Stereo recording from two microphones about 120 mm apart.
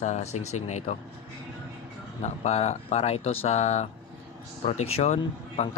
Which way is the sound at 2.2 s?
65° left (ahead or behind).